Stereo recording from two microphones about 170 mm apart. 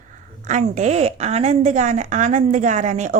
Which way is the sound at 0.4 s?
45° right (ahead or behind).